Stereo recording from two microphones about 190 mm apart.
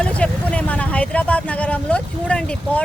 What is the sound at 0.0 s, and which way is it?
Speech, 5° left (ahead or behind).